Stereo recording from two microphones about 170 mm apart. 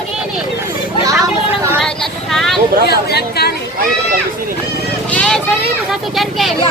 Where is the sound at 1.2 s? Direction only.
15° right (ahead or behind).